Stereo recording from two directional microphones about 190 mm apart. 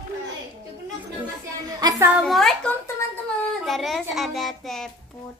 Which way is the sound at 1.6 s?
20° right (ahead or behind).